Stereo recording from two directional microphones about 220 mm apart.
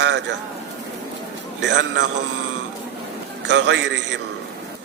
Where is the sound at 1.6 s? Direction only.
55° right (ahead or behind).